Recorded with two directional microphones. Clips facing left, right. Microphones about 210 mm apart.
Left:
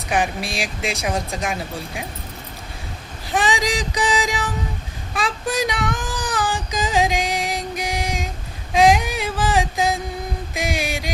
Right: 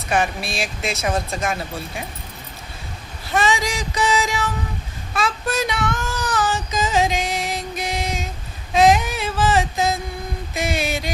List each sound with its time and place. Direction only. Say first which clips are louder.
0.1 s music: even; 15° left (ahead or behind)
3.3 s music: even; 15° left (ahead or behind)
5.1 s child singing: even; 15° left (ahead or behind)
8.7 s a sound: even; 15° left (ahead or behind)